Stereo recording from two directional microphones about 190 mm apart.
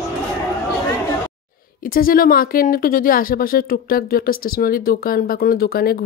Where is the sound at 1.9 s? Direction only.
50° left (ahead or behind).